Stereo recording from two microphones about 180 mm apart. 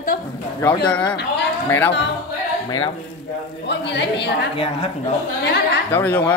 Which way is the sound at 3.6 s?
75° left (ahead or behind).